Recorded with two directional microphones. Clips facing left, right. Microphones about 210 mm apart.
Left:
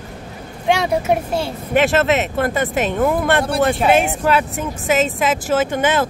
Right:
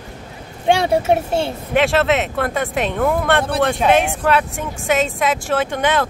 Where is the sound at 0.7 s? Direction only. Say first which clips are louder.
Right 2 dB; 30° right (ahead or behind).